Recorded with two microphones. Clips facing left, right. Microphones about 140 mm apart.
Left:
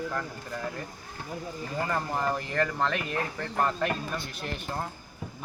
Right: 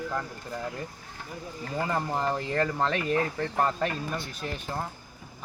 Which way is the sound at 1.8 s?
15° right (ahead or behind).